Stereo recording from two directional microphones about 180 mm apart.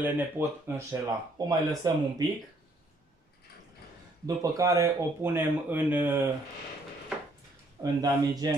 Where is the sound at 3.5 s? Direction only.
60° left (ahead or behind).